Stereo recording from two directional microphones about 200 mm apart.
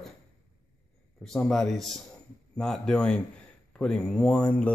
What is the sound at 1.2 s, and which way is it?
Speech, centre (ahead or behind).